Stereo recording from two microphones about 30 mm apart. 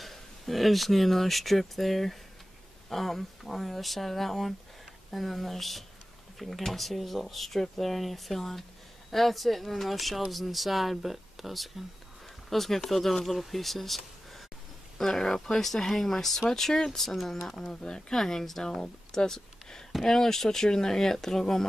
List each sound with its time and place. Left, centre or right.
0.0 s speech: centre
15.0 s speech: centre